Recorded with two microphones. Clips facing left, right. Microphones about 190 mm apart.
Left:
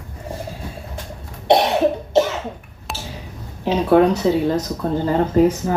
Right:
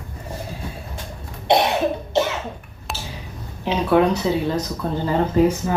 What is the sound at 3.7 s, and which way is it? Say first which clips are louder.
Speech: left 3 dB; 40° left (ahead or behind).